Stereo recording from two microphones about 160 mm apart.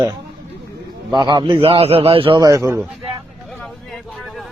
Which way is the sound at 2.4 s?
20° right (ahead or behind).